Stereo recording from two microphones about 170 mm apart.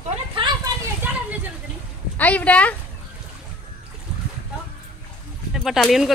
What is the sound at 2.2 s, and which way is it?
Speech, 10° left (ahead or behind).